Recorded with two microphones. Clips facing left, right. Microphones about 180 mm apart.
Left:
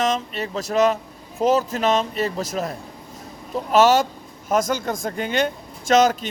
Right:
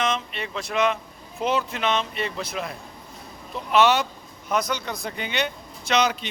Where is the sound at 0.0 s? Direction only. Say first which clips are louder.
Left 4 dB; 40° left (ahead or behind).